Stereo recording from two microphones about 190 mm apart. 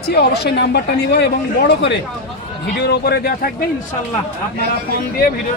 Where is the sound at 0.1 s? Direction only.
60° left (ahead or behind).